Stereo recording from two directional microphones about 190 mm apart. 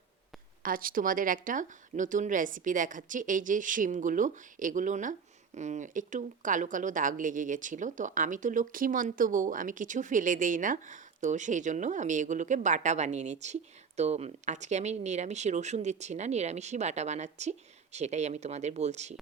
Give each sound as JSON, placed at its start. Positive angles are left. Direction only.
{"t": 0.6, "sound": "speech", "side_deg": -50}